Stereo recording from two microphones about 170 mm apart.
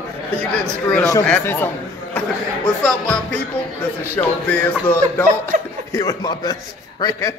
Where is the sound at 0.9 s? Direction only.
15° left (ahead or behind).